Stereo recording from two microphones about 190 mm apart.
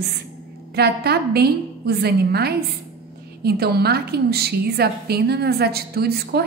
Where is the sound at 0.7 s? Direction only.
55° right (ahead or behind).